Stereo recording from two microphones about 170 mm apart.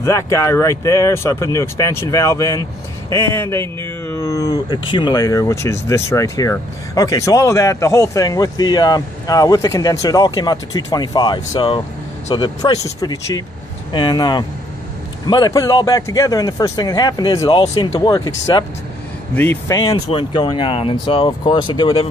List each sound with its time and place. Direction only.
0.0 s speech: 15° left (ahead or behind)
19.3 s speech: 10° left (ahead or behind)
20.1 s speech: 30° left (ahead or behind)